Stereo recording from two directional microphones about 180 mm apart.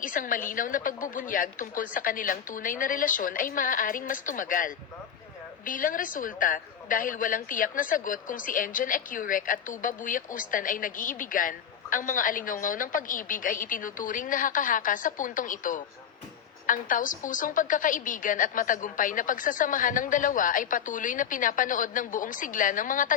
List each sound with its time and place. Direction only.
0.0 s a woman's voice: 50° left (ahead or behind)